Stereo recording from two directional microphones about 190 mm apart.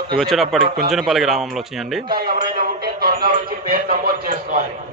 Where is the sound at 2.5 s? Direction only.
50° right (ahead or behind).